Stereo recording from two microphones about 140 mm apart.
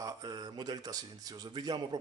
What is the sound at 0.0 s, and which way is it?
A man's voice, 25° right (ahead or behind).